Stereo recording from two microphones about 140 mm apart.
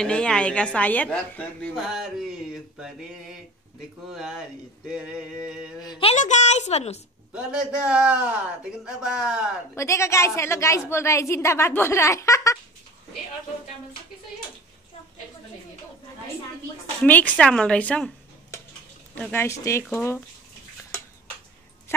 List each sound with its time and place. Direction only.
0.0 s a woman's voice: 5° left (ahead or behind)
1.8 s a sound: centre (ahead or behind)
4.1 s a sound: 5° right (ahead or behind)
6.1 s speech: 60° left (ahead or behind)
7.3 s a man's voice: 5° right (ahead or behind)
9.8 s a woman's voice: 20° left (ahead or behind)
17.0 s a woman's voice: 10° left (ahead or behind)
19.3 s a woman's voice: 20° left (ahead or behind)